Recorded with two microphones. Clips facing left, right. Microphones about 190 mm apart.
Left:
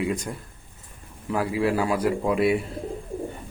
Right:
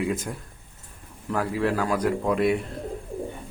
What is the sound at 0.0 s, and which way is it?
Speech, centre (ahead or behind).